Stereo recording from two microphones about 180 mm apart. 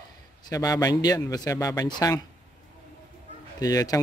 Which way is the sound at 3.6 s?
20° left (ahead or behind).